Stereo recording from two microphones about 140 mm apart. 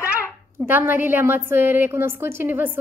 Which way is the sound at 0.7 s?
15° right (ahead or behind).